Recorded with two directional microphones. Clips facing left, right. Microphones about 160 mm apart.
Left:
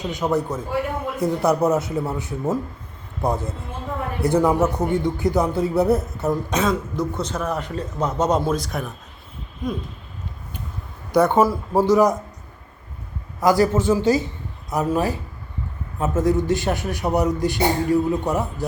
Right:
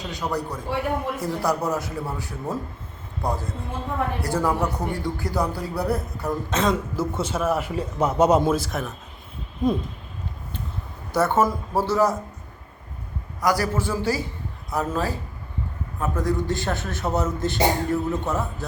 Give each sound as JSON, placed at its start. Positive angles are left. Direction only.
{"t": 0.0, "sound": "speech", "side_deg": 20}
{"t": 6.6, "sound": "a man's voice", "side_deg": 0}
{"t": 11.1, "sound": "a man's voice", "side_deg": 15}
{"t": 13.4, "sound": "a man's voice", "side_deg": 25}